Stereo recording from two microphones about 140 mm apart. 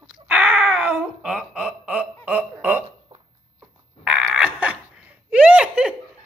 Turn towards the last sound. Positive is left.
turn(degrees=-5)  # may be behind; listen again after turning